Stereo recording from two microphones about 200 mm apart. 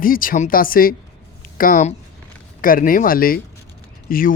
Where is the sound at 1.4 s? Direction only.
45° left (ahead or behind).